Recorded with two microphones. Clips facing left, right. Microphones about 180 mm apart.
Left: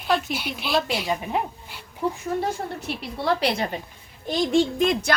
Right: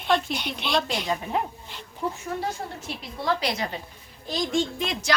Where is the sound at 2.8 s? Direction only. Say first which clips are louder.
Left 4 dB; 65° left (ahead or behind).